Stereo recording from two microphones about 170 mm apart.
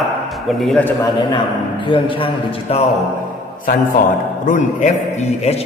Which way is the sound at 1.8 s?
30° left (ahead or behind).